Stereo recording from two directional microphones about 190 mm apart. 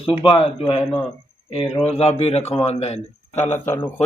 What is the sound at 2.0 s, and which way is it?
Speech, 35° left (ahead or behind).